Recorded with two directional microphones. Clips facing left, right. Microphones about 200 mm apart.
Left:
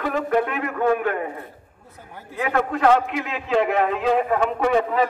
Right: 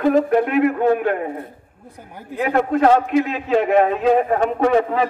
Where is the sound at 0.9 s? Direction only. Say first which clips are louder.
Right 3 dB; 30° right (ahead or behind).